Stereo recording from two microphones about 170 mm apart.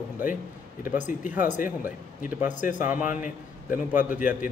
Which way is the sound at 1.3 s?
10° right (ahead or behind).